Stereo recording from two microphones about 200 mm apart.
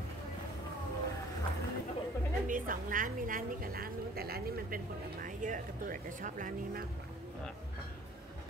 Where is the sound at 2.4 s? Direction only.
40° right (ahead or behind).